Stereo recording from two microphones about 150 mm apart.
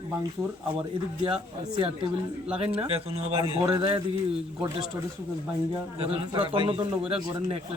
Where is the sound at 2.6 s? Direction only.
40° right (ahead or behind).